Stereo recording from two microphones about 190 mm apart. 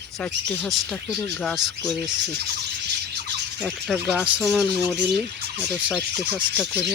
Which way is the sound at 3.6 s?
Centre (ahead or behind).